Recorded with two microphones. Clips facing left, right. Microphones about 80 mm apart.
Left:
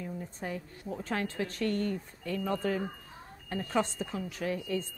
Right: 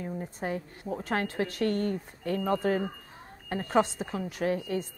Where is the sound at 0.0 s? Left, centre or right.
Right.